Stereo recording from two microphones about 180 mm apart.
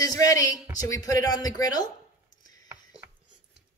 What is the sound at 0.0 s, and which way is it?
Speech, 20° left (ahead or behind).